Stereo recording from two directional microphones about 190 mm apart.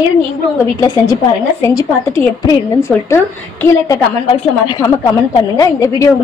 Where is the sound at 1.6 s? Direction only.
15° left (ahead or behind).